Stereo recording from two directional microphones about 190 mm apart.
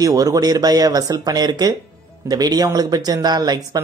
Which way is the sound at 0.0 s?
20° right (ahead or behind).